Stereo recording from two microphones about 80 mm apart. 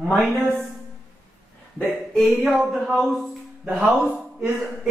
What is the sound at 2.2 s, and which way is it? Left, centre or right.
Speech, centre.